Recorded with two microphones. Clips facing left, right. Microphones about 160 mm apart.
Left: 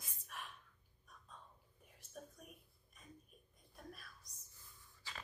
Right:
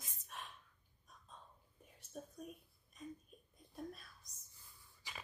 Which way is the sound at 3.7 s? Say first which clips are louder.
Right 7 dB; 25° right (ahead or behind).